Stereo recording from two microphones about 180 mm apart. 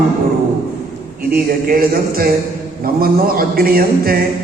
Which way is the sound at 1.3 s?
55° right (ahead or behind).